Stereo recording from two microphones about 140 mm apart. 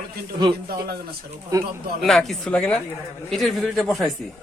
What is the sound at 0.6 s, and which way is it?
Speech, 90° right.